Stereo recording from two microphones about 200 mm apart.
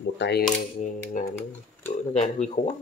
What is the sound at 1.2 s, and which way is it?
Speech, 40° left (ahead or behind).